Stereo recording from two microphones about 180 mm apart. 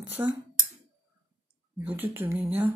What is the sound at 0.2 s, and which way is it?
Speech, 15° right (ahead or behind).